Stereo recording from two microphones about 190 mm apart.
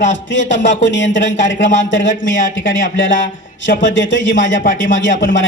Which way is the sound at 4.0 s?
75° left (ahead or behind).